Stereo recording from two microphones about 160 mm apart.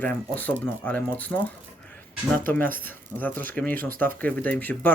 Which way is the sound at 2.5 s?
10° left (ahead or behind).